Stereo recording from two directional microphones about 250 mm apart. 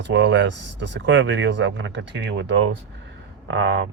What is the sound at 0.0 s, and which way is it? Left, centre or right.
Speech, right.